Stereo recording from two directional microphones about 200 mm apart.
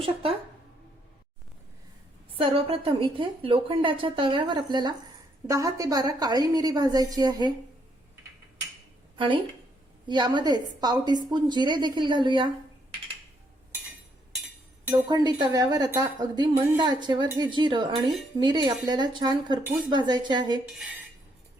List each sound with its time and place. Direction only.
0.0 s a woman's voice: 25° right (ahead or behind)
2.3 s a woman's voice: 25° right (ahead or behind)
9.1 s a woman's voice: 25° right (ahead or behind)
15.1 s a woman's voice: 20° right (ahead or behind)
20.7 s cutlery: centre (ahead or behind)